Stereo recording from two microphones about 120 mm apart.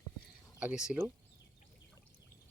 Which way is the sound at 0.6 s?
5° right (ahead or behind).